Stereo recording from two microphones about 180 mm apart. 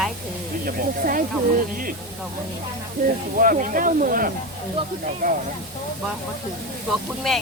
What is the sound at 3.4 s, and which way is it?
A woman's voice, 50° right (ahead or behind).